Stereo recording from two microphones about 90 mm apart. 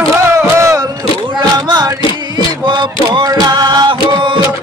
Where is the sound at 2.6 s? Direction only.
55° right (ahead or behind).